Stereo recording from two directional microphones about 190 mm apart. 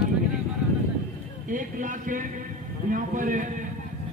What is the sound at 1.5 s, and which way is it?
Speech, 45° right (ahead or behind).